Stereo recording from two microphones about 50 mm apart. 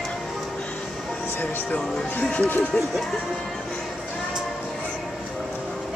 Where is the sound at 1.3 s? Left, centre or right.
Left.